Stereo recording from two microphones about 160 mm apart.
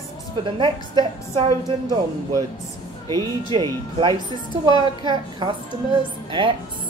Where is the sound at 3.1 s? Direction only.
30° right (ahead or behind).